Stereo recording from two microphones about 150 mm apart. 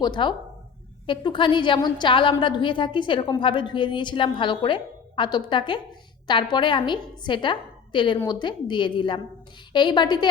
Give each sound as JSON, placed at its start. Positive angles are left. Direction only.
{"t": 0.0, "sound": "a woman's voice", "side_deg": 30}